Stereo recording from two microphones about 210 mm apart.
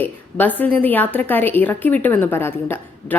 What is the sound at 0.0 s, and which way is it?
A woman's voice, 10° left (ahead or behind).